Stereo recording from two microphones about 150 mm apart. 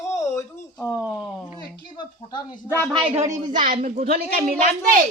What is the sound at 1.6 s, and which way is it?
Speech, 30° left (ahead or behind).